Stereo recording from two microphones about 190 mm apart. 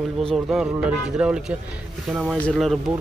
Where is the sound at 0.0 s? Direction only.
Centre (ahead or behind).